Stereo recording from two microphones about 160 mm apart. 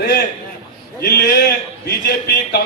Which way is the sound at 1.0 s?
75° left (ahead or behind).